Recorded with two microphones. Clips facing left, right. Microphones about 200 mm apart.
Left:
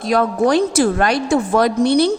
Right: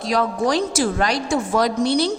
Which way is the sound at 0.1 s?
55° left (ahead or behind).